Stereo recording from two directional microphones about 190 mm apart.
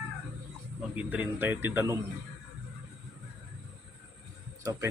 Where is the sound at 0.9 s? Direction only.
10° right (ahead or behind).